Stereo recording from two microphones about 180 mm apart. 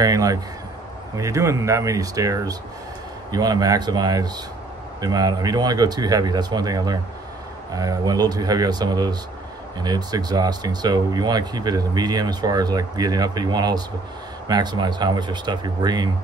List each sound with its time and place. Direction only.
0.0 s speech: 20° right (ahead or behind)